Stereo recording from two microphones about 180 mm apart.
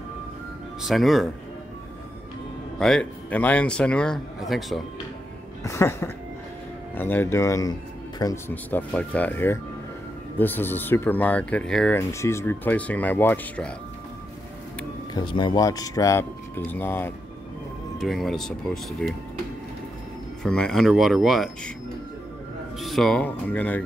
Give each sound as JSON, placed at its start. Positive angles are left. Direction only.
{"t": 0.8, "sound": "speech", "side_deg": 0}
{"t": 2.8, "sound": "speech", "side_deg": 5}
{"t": 5.6, "sound": "speech", "side_deg": 15}
{"t": 12.0, "sound": "speech", "side_deg": 15}
{"t": 15.1, "sound": "speech", "side_deg": 25}
{"t": 17.9, "sound": "speech", "side_deg": 0}
{"t": 20.4, "sound": "speech", "side_deg": 5}
{"t": 22.8, "sound": "speech", "side_deg": 0}